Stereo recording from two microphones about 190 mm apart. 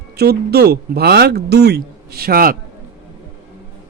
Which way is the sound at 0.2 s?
55° right (ahead or behind).